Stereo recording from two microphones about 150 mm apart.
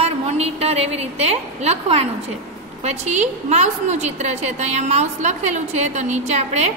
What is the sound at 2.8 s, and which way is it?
A woman's voice, 50° right (ahead or behind).